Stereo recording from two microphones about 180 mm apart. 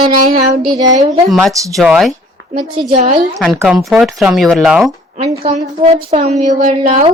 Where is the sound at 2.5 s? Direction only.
30° right (ahead or behind).